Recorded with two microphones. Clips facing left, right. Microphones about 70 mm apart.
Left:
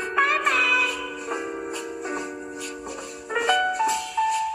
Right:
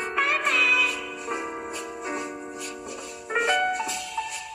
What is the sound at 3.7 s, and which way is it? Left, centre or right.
Music, left.